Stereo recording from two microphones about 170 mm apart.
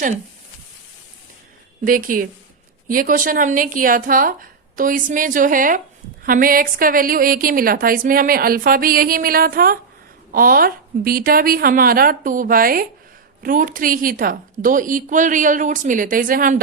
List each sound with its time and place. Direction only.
1.8 s a woman's voice: 55° right (ahead or behind)